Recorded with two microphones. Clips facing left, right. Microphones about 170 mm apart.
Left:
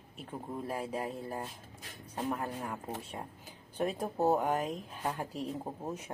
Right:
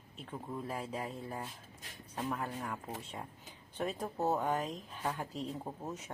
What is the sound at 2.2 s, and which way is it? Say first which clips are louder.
Speech: left 2 dB; 25° left (ahead or behind).